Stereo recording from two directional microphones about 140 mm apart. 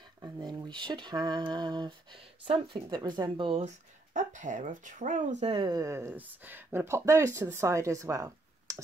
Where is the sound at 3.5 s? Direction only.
60° right (ahead or behind).